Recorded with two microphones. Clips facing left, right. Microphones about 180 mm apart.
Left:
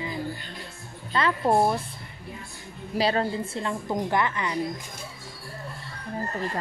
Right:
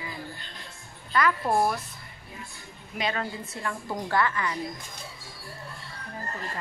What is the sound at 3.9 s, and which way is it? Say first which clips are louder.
Speech: left 1 dB; 20° left (ahead or behind).